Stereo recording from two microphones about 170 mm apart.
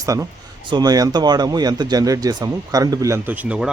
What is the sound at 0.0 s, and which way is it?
Speech, 20° right (ahead or behind).